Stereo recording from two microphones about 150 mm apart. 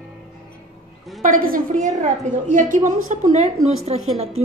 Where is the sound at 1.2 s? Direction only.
65° right (ahead or behind).